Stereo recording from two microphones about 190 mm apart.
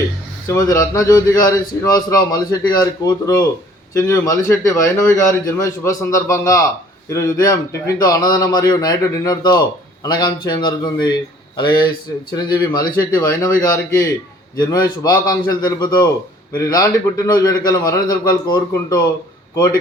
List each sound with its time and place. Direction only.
0.4 s a man's voice: 15° left (ahead or behind)